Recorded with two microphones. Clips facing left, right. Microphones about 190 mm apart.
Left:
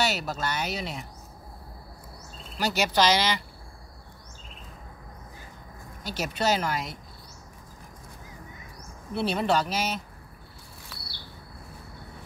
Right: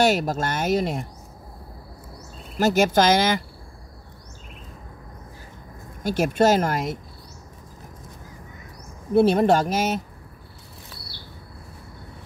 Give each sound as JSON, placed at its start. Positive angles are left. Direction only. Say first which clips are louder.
{"t": 0.0, "sound": "speech", "louder": "right 8 dB", "side_deg": -50}
{"t": 2.6, "sound": "speech", "louder": "right 6 dB", "side_deg": -50}
{"t": 6.0, "sound": "speech", "louder": "right 8 dB", "side_deg": -50}
{"t": 9.1, "sound": "speech", "louder": "right 9 dB", "side_deg": -45}